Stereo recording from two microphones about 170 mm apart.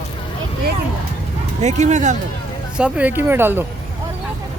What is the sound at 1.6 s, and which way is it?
Speech, 45° right (ahead or behind).